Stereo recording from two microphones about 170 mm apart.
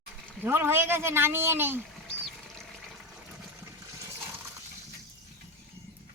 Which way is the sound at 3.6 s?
15° right (ahead or behind).